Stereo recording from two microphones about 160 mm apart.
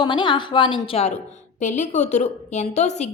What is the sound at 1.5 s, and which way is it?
A woman's voice, 50° left (ahead or behind).